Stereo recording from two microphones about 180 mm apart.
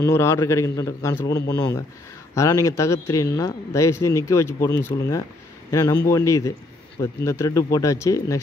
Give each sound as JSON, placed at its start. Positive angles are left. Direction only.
{"t": 0.0, "sound": "speech", "side_deg": 15}